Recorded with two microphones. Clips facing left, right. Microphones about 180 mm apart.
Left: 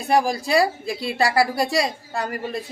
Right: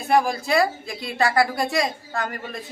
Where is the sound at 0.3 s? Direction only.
35° left (ahead or behind).